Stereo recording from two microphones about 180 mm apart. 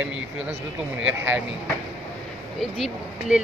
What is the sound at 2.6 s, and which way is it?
Speech, centre (ahead or behind).